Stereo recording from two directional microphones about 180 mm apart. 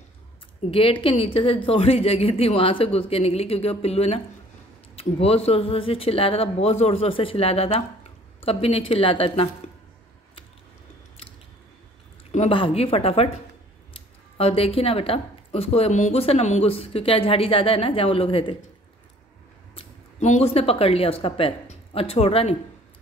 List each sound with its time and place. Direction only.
0.7 s speech: 30° left (ahead or behind)
12.3 s speech: 35° left (ahead or behind)
14.3 s speech: 35° left (ahead or behind)
19.7 s speech: 35° left (ahead or behind)